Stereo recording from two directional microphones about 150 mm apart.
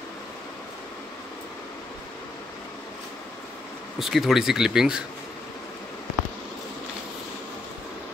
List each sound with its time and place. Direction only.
4.0 s speech: centre (ahead or behind)